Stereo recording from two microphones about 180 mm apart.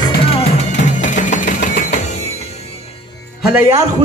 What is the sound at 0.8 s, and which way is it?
Music, 45° left (ahead or behind).